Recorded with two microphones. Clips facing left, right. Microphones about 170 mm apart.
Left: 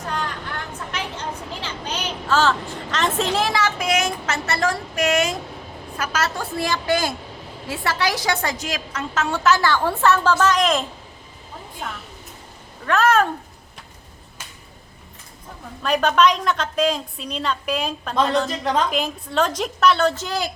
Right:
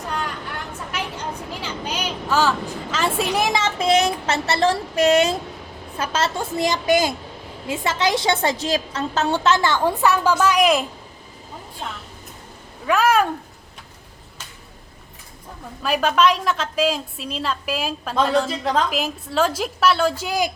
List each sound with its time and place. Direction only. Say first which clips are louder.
1.9 s speech: left 1 dB; 10° right (ahead or behind)
12.8 s speech: even; 10° right (ahead or behind)
15.8 s a woman's voice: left 1 dB; 5° right (ahead or behind)